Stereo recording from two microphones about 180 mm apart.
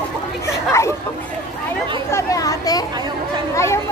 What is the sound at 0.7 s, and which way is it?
Speech, 15° left (ahead or behind).